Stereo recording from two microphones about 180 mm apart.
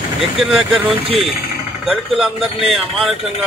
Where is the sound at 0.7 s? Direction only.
30° right (ahead or behind).